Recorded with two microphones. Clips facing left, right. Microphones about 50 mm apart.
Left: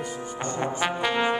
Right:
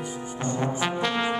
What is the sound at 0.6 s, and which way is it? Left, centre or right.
Brass instrument, centre.